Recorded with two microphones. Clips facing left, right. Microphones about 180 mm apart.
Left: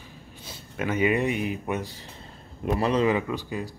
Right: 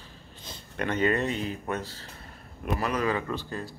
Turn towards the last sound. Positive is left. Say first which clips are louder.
# left 3 dB
turn(degrees=15)  # may be behind; listen again after turning